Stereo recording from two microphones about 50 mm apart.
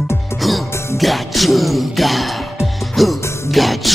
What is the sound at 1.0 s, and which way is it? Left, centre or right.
Music, centre.